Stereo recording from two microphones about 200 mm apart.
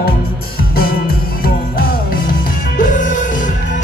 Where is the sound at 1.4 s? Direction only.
45° left (ahead or behind).